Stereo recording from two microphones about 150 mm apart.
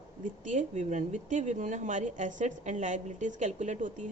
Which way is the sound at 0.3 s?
55° right (ahead or behind).